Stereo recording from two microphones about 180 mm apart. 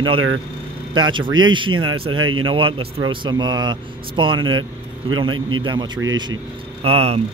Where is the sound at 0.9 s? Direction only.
25° right (ahead or behind).